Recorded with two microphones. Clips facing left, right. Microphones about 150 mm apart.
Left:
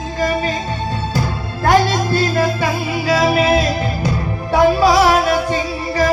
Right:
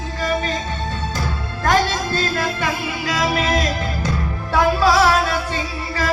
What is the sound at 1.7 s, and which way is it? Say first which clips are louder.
Music: left 4 dB; 15° left (ahead or behind).